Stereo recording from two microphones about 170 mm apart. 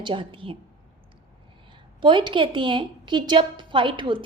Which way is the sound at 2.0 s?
30° right (ahead or behind).